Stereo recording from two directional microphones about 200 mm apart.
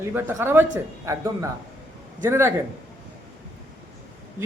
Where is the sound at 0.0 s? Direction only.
10° right (ahead or behind).